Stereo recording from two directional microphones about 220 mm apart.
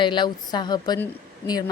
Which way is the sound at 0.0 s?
20° left (ahead or behind).